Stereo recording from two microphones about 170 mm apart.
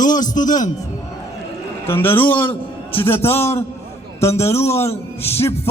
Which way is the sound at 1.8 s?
15° left (ahead or behind).